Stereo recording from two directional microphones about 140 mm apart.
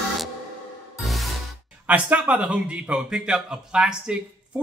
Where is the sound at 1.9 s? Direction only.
10° right (ahead or behind).